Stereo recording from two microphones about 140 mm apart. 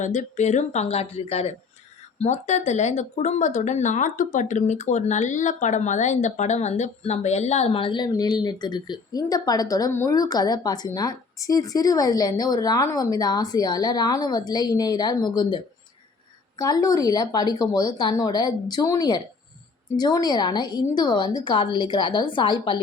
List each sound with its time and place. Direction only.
0.0 s speech: 60° left (ahead or behind); by 22.8 s 35° left (ahead or behind)